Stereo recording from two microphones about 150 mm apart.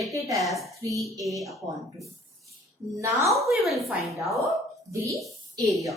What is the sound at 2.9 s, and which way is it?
Speech, 20° right (ahead or behind).